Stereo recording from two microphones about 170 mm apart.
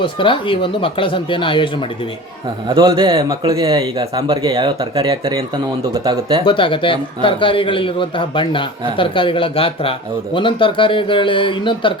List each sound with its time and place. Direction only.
0.0 s speech: 30° left (ahead or behind)
2.6 s speech: 30° right (ahead or behind)
4.5 s speech: 30° right (ahead or behind)
6.4 s a man's voice: 30° left (ahead or behind)